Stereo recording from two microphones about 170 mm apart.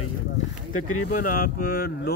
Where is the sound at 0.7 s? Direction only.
55° left (ahead or behind).